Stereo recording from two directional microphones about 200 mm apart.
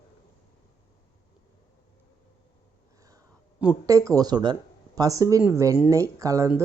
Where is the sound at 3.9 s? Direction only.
15° right (ahead or behind).